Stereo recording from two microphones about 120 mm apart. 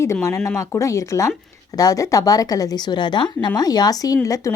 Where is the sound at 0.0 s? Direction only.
25° left (ahead or behind).